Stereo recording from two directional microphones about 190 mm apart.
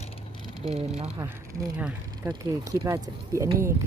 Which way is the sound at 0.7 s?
30° right (ahead or behind).